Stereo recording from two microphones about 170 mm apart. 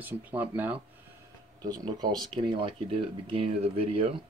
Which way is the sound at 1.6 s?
25° right (ahead or behind).